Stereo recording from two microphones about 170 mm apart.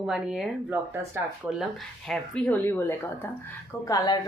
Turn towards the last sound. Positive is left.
turn(degrees=20)  # may be behind; listen again after turning